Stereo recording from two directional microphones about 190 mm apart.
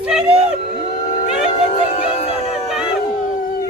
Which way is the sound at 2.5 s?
Centre (ahead or behind).